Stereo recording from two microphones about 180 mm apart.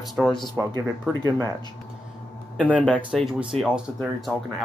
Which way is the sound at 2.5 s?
5° right (ahead or behind).